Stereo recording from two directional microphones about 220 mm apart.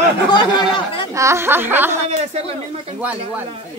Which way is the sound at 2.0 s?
30° right (ahead or behind).